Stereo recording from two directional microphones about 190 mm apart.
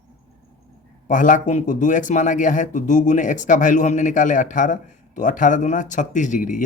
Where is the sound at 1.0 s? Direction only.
40° left (ahead or behind).